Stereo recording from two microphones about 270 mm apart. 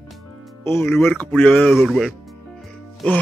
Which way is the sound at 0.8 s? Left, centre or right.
Centre.